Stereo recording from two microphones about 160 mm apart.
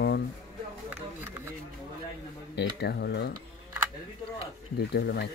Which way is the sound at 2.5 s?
90° left.